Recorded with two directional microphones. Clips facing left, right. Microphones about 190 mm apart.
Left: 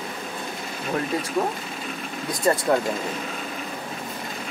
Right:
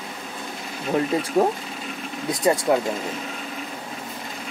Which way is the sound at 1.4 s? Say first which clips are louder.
Right 6 dB; 45° right (ahead or behind).